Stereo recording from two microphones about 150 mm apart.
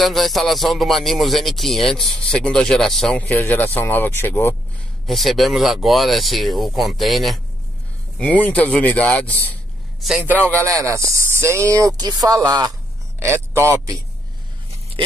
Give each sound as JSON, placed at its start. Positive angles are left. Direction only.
{"t": 0.0, "sound": "speech", "side_deg": 0}
{"t": 5.0, "sound": "speech", "side_deg": 0}
{"t": 10.0, "sound": "a man's voice", "side_deg": -10}